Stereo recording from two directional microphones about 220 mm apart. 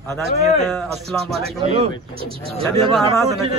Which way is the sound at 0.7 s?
Centre (ahead or behind).